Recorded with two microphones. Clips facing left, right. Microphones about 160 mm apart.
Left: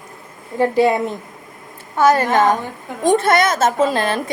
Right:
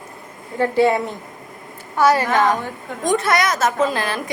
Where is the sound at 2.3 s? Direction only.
20° left (ahead or behind).